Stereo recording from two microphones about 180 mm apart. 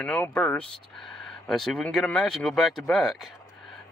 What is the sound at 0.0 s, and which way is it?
Speech, 5° left (ahead or behind).